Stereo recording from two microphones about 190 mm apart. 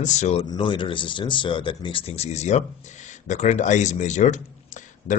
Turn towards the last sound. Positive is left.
turn(degrees=40)  # may be behind; listen again after turning